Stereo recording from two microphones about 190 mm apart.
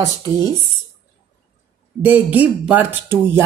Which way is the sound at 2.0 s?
10° right (ahead or behind).